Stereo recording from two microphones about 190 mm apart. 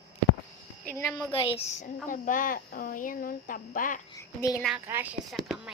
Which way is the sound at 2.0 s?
45° left (ahead or behind).